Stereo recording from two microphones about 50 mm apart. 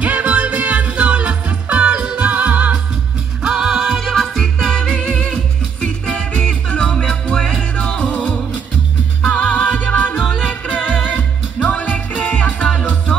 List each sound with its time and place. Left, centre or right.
0.0 s music: right
3.4 s music: centre
4.0 s music: centre; by 13.1 s left